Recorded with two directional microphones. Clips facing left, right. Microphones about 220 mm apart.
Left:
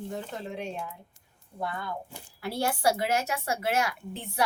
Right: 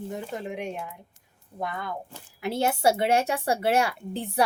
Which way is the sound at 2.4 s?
20° right (ahead or behind).